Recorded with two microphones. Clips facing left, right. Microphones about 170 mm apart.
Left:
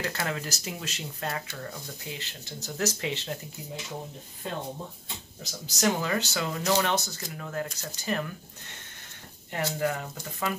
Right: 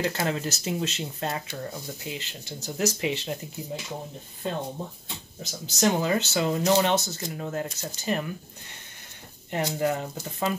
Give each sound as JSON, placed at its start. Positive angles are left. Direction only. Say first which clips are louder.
{"t": 0.0, "sound": "speech", "louder": "right 5 dB", "side_deg": -25}
{"t": 5.4, "sound": "speech", "louder": "right 3 dB", "side_deg": -25}
{"t": 9.5, "sound": "speech", "louder": "right 3 dB", "side_deg": -20}